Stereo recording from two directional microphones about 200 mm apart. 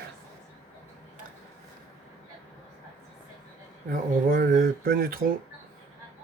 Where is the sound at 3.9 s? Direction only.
45° right (ahead or behind).